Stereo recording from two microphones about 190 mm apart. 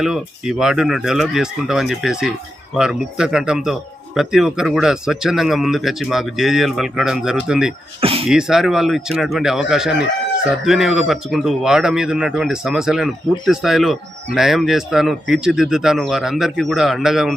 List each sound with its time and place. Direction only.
0.0 s a man's voice: 5° right (ahead or behind)
8.0 s speech: 30° right (ahead or behind)
8.3 s a man's voice: centre (ahead or behind)